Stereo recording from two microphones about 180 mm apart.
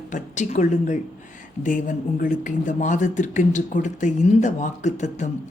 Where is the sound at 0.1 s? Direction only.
40° left (ahead or behind).